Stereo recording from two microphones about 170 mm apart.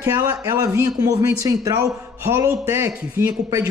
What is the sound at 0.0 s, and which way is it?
Speech, 20° right (ahead or behind).